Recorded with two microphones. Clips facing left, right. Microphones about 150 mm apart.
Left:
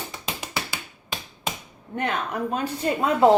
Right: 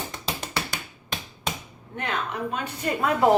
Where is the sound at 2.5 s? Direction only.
35° left (ahead or behind).